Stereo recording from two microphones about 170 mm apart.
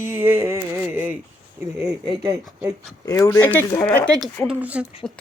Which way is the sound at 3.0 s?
20° left (ahead or behind).